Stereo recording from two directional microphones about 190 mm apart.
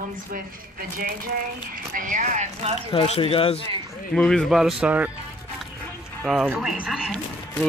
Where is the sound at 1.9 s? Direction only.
45° right (ahead or behind).